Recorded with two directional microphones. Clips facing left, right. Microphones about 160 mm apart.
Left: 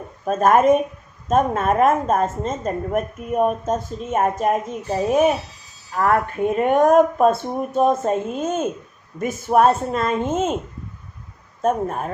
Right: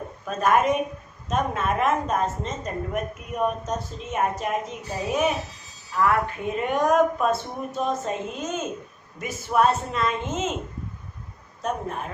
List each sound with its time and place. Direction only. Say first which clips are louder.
0.3 s a woman's voice: left 6 dB; 50° left (ahead or behind)
11.6 s a woman's voice: left 8 dB; 45° left (ahead or behind)